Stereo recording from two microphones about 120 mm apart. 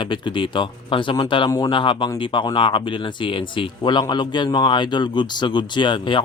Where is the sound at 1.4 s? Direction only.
30° left (ahead or behind).